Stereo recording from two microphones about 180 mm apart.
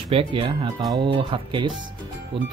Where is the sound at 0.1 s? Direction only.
30° right (ahead or behind).